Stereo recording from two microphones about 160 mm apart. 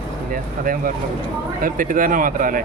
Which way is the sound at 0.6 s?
60° right (ahead or behind).